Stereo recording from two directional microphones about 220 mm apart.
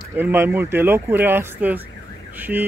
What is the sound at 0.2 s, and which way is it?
Speech, 10° right (ahead or behind).